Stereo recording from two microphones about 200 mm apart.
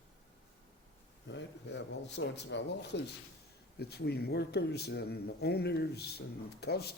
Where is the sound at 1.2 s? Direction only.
65° left (ahead or behind).